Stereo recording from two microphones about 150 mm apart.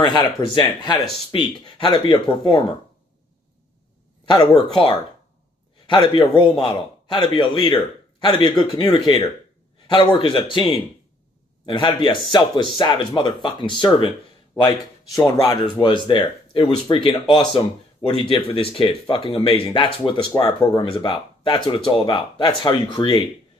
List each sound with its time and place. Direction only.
0.0 s a man's voice: 30° left (ahead or behind)
5.9 s a man's voice: 30° left (ahead or behind)
14.6 s speech: 20° left (ahead or behind)
15.4 s a man's voice: 30° left (ahead or behind)